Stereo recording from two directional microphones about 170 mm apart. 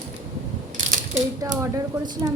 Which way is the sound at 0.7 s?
50° right (ahead or behind).